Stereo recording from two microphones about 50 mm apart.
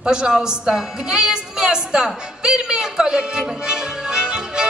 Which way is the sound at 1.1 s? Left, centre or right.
Centre.